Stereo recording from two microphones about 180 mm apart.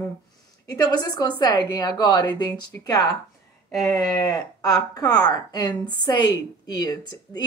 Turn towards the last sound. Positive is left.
turn(degrees=25)  # may be behind; listen again after turning